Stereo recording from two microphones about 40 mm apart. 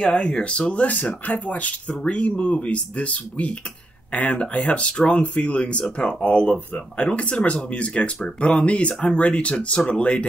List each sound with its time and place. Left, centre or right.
0.1 s speech: left